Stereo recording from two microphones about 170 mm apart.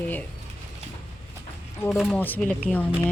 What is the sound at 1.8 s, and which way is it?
Speech, 5° left (ahead or behind).